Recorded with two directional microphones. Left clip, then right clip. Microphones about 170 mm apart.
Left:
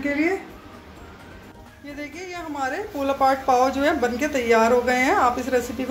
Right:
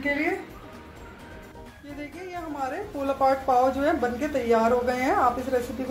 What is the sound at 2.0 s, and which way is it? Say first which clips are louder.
Speech: left 3 dB; centre (ahead or behind).